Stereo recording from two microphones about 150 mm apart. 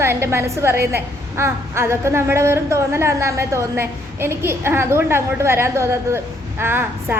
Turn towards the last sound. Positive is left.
turn(degrees=-15)  # may be behind; listen again after turning